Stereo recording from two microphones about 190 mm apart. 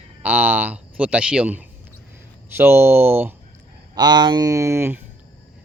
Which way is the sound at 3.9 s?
20° right (ahead or behind).